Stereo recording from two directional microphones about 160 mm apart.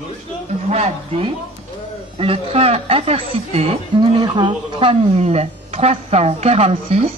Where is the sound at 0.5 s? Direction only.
45° right (ahead or behind).